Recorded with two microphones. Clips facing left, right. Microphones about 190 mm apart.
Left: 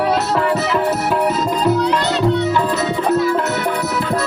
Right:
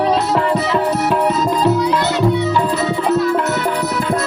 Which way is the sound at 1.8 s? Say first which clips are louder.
Right 1 dB; 10° right (ahead or behind).